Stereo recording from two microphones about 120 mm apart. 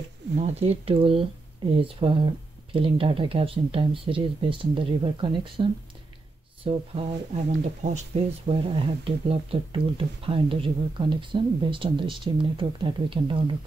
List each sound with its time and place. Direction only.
0.4 s speech: 60° right (ahead or behind); by 5.7 s 45° right (ahead or behind)
6.7 s speech: 55° right (ahead or behind)
7.8 s speech: 70° right (ahead or behind)
8.5 s speech: 50° right (ahead or behind)